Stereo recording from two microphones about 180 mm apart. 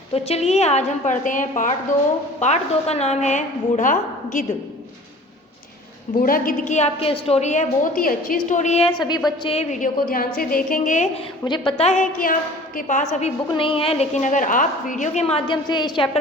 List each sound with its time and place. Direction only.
0.1 s a woman's voice: 35° left (ahead or behind)
6.1 s a woman's voice: 50° left (ahead or behind)
11.4 s a woman's voice: 25° left (ahead or behind)
13.5 s a woman's voice: 30° left (ahead or behind)